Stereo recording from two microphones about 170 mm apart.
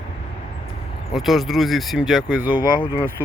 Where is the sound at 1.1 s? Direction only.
Centre (ahead or behind).